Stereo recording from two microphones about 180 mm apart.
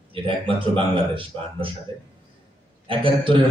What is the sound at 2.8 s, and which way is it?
Speech, 30° right (ahead or behind).